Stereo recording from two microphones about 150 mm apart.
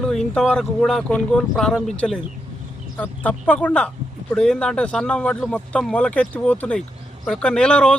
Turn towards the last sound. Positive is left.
turn(degrees=5)  # may be behind; listen again after turning